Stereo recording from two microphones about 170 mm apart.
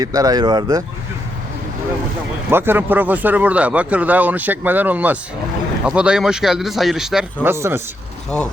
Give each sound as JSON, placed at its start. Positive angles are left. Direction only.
{"t": 0.0, "sound": "speech", "side_deg": -20}
{"t": 2.5, "sound": "a man's voice", "side_deg": -15}
{"t": 7.4, "sound": "a man's voice", "side_deg": -15}